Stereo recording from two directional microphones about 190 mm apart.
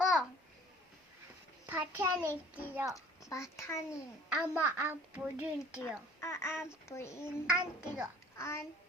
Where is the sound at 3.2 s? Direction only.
15° left (ahead or behind).